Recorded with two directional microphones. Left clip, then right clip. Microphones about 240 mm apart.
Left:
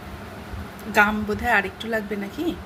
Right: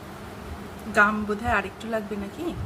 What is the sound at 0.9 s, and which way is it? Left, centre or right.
A woman's voice, left.